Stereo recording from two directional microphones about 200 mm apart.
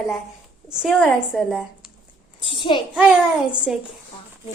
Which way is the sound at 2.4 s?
25° left (ahead or behind).